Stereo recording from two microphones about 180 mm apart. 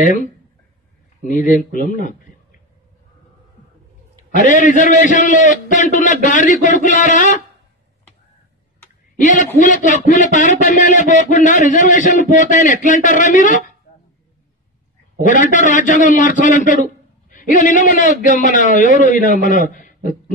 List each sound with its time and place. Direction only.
1.2 s speech: 45° left (ahead or behind)
4.4 s speech: 45° left (ahead or behind)
9.2 s speech: 45° left (ahead or behind)
15.1 s a man's voice: 45° left (ahead or behind)